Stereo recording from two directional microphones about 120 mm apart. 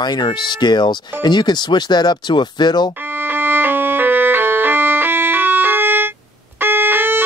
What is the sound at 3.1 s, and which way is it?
Music, 15° right (ahead or behind).